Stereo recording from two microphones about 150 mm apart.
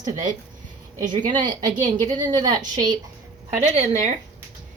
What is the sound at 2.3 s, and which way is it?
Speech, 25° right (ahead or behind).